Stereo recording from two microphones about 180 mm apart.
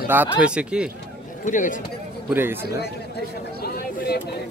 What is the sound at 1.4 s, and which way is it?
Speech, 45° left (ahead or behind).